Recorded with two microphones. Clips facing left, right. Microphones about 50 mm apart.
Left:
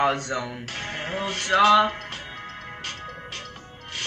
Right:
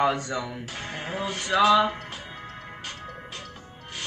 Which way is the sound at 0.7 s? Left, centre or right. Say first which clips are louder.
Left 2 dB; left.